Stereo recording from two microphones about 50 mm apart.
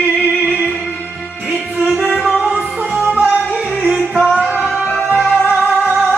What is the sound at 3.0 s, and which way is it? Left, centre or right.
Music, right.